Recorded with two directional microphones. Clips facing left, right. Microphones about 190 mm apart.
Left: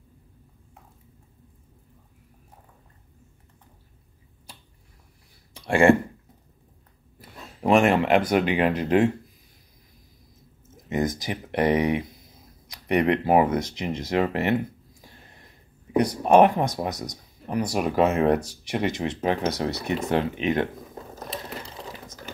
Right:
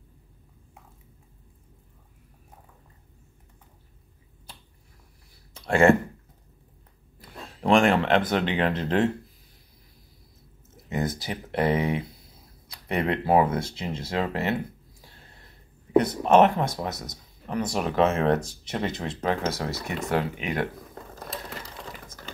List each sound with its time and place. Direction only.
5.5 s a sound: 15° left (ahead or behind)
7.2 s speech: 5° left (ahead or behind)
10.9 s speech: 15° left (ahead or behind)